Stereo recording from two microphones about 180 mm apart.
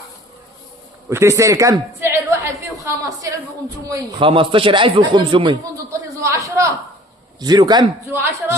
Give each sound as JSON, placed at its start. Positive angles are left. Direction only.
{"t": 1.1, "sound": "a woman's voice", "side_deg": -15}
{"t": 4.3, "sound": "speech", "side_deg": -30}
{"t": 6.2, "sound": "a sound", "side_deg": -15}
{"t": 7.3, "sound": "speech", "side_deg": -20}